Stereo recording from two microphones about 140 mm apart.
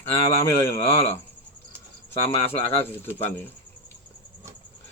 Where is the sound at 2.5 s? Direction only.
15° left (ahead or behind).